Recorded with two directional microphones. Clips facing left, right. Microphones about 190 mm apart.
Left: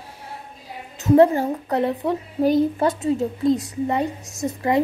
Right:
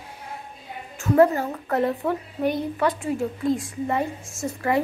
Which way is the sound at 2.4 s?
30° left (ahead or behind).